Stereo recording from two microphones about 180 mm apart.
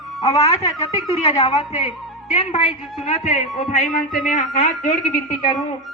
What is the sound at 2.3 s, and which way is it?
A man's voice, 40° left (ahead or behind).